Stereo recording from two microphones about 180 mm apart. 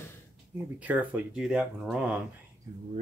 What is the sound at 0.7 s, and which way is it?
Speech, 10° right (ahead or behind).